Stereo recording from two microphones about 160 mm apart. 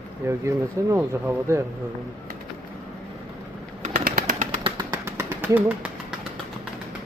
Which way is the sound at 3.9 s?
65° right (ahead or behind).